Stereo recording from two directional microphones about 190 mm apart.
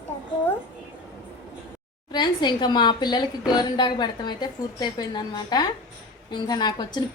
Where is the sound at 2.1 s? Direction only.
25° left (ahead or behind).